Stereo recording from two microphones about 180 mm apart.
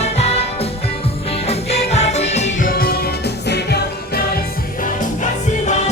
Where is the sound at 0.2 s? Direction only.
35° left (ahead or behind).